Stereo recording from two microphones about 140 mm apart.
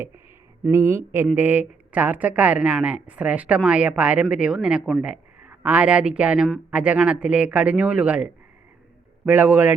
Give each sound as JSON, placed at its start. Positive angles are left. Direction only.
{"t": 0.7, "sound": "speech", "side_deg": -20}